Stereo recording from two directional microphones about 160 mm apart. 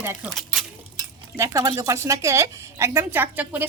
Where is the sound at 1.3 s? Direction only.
20° right (ahead or behind).